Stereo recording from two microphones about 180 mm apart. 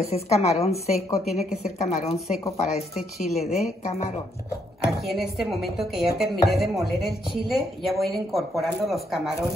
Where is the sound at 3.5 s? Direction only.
35° left (ahead or behind).